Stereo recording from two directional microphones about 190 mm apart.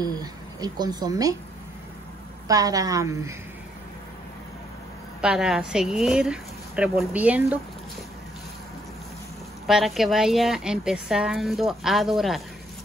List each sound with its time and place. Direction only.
0.0 s speech: 20° right (ahead or behind)
2.4 s a woman's voice: 20° right (ahead or behind)
5.2 s a woman's voice: 5° right (ahead or behind)
9.7 s a woman's voice: centre (ahead or behind)